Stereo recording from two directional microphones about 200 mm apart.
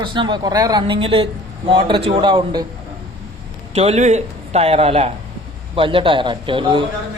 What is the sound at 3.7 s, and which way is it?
A man's voice, 30° right (ahead or behind).